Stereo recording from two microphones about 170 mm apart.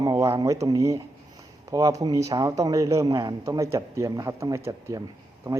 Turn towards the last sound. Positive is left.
turn(degrees=-20)  # may be behind; listen again after turning